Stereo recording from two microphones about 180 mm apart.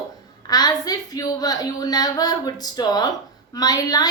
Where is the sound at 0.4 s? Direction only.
20° left (ahead or behind).